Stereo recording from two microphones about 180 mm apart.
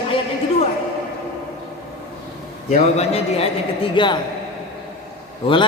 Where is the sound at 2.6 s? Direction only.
35° left (ahead or behind).